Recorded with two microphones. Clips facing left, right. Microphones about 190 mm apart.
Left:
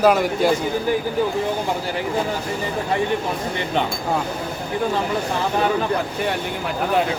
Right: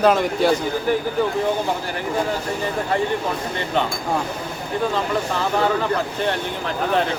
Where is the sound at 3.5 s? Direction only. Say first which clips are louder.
Even; 15° left (ahead or behind).